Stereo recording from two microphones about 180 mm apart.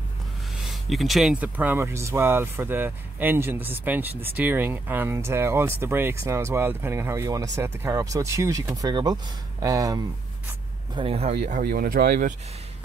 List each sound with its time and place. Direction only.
0.6 s speech: centre (ahead or behind); by 10.0 s 20° right (ahead or behind)
11.0 s speech: 35° right (ahead or behind)
11.6 s speech: 55° right (ahead or behind)